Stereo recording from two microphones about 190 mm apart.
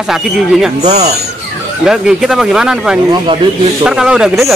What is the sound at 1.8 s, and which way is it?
Speech, 5° right (ahead or behind).